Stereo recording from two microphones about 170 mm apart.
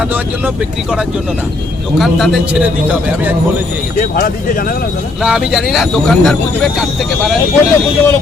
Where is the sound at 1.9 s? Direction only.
Centre (ahead or behind).